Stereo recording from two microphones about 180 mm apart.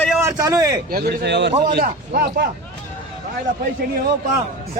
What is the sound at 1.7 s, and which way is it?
Speech, 60° right (ahead or behind).